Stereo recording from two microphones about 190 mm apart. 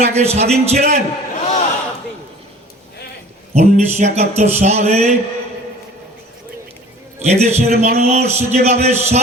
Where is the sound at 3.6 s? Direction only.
35° right (ahead or behind).